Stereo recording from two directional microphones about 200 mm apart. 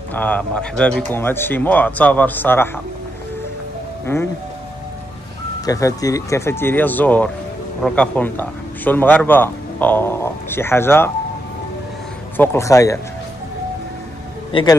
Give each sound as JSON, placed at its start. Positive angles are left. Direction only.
{"t": 0.1, "sound": "a man's voice", "side_deg": 5}
{"t": 4.0, "sound": "speech", "side_deg": 10}
{"t": 5.7, "sound": "a man's voice", "side_deg": 15}
{"t": 12.4, "sound": "a man's voice", "side_deg": 15}
{"t": 14.5, "sound": "speech", "side_deg": 25}